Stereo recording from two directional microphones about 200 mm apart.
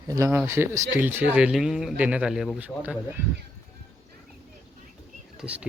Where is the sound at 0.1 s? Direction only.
15° right (ahead or behind).